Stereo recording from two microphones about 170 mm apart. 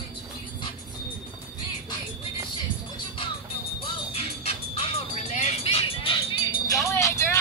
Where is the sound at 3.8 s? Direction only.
35° left (ahead or behind).